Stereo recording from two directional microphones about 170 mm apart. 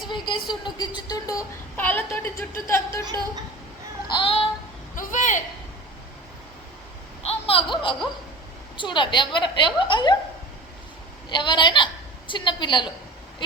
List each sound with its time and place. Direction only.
0.0 s a woman's voice: 30° left (ahead or behind)
3.0 s a woman's voice: 25° right (ahead or behind)
4.1 s child singing: 30° left (ahead or behind)
4.9 s a sound: 50° left (ahead or behind)
7.3 s a sound: 35° left (ahead or behind)
8.8 s a woman's voice: 30° left (ahead or behind)
11.3 s a woman's voice: 25° left (ahead or behind)